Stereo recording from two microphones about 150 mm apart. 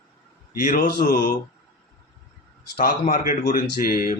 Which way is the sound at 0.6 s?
65° left (ahead or behind).